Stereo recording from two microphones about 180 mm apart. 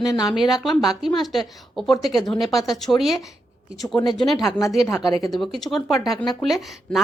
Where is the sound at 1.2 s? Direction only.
Centre (ahead or behind).